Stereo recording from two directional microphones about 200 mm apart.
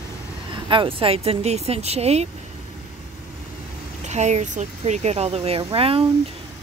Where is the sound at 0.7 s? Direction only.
25° right (ahead or behind).